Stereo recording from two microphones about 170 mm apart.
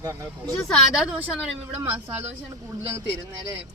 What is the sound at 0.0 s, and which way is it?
Speech, 20° right (ahead or behind).